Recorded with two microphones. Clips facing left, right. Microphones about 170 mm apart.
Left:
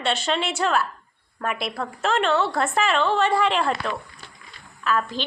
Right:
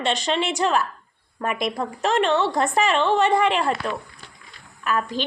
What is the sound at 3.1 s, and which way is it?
Speech, 15° right (ahead or behind).